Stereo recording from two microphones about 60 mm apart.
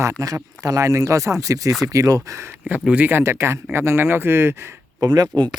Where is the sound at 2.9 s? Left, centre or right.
Right.